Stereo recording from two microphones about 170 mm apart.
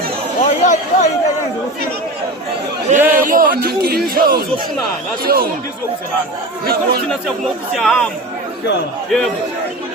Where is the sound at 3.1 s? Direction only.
50° right (ahead or behind).